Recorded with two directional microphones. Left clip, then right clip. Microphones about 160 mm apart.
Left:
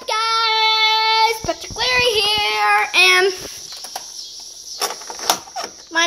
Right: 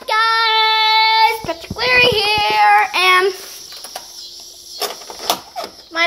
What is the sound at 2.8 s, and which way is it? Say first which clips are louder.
Child singing: right 1 dB; 40° left (ahead or behind).